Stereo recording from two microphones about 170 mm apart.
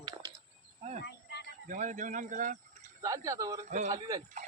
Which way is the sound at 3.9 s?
20° right (ahead or behind).